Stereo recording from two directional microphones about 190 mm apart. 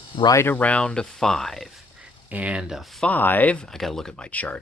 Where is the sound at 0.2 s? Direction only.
15° left (ahead or behind).